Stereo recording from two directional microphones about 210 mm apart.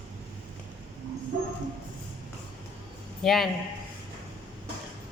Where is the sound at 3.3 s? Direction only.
Centre (ahead or behind).